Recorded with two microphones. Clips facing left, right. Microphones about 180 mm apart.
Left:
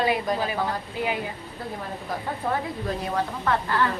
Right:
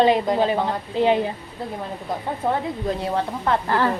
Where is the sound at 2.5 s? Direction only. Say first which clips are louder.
Right 4 dB; 25° right (ahead or behind).